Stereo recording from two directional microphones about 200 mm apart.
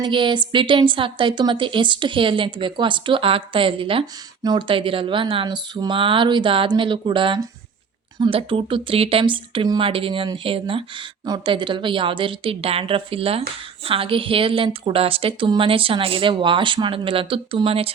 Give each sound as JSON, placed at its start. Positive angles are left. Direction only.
{"t": 0.0, "sound": "a woman's voice", "side_deg": -25}